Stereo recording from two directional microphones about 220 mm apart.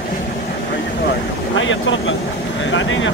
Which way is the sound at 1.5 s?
60° left (ahead or behind).